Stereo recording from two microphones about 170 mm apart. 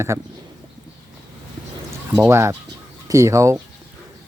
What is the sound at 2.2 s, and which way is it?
Speech, 15° right (ahead or behind).